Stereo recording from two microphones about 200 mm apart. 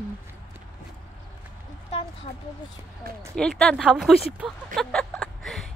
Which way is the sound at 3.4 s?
5° left (ahead or behind).